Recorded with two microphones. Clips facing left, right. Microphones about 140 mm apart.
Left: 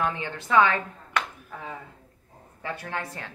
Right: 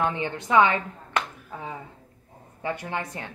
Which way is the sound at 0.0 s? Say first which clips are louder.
Right 2 dB; 20° right (ahead or behind).